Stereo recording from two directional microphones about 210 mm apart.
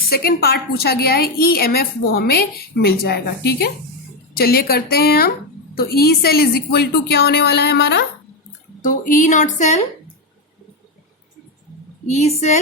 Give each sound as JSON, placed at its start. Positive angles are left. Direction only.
{"t": 0.1, "sound": "a woman's voice", "side_deg": 50}
{"t": 8.8, "sound": "a woman's voice", "side_deg": 40}
{"t": 12.0, "sound": "a woman's voice", "side_deg": 30}